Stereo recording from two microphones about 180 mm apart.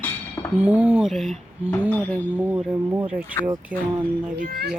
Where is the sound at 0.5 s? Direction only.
5° right (ahead or behind).